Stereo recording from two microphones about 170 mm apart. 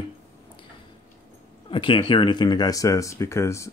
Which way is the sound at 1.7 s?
30° left (ahead or behind).